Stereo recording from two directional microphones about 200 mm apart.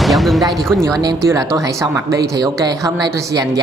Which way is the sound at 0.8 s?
20° right (ahead or behind).